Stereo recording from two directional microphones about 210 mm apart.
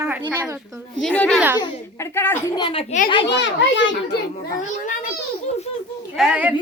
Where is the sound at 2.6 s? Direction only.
25° left (ahead or behind).